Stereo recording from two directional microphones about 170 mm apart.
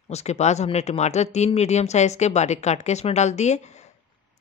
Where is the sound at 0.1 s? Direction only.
40° left (ahead or behind).